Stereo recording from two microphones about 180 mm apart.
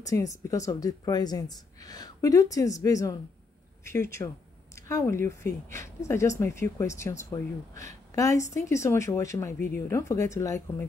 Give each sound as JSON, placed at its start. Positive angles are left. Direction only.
{"t": 0.0, "sound": "a woman's voice", "side_deg": 20}